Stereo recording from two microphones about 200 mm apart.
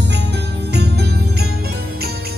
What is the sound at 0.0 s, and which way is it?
Music, 60° right (ahead or behind).